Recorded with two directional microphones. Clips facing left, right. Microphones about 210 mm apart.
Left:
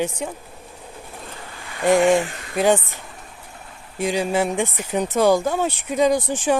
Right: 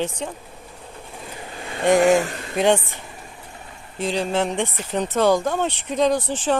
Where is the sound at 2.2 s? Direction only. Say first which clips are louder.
Right 1 dB; 35° right (ahead or behind).